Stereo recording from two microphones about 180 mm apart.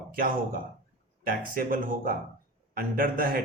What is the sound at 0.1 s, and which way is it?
A man's voice, 50° right (ahead or behind).